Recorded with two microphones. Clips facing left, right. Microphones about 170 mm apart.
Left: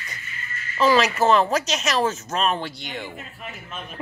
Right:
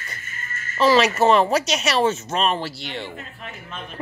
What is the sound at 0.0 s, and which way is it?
Music, 45° right (ahead or behind).